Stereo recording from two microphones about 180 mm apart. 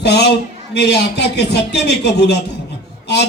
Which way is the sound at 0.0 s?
70° left (ahead or behind).